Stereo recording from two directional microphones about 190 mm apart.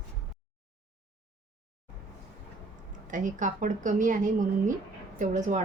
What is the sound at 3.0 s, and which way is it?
A woman's voice, 45° right (ahead or behind).